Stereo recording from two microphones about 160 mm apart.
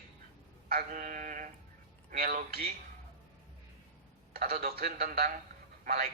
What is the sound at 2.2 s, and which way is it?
Speech, 65° right (ahead or behind).